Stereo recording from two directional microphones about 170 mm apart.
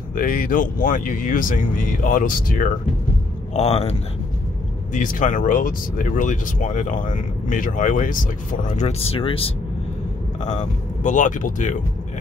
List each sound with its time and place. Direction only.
0.1 s speech: 55° left (ahead or behind)
3.5 s speech: 35° left (ahead or behind)
4.9 s speech: 50° left (ahead or behind); by 9.5 s 35° left (ahead or behind)
10.4 s speech: 45° left (ahead or behind)